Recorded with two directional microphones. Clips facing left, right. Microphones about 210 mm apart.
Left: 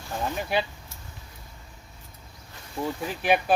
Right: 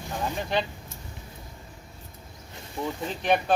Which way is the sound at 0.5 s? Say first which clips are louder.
Left 1 dB; 10° left (ahead or behind).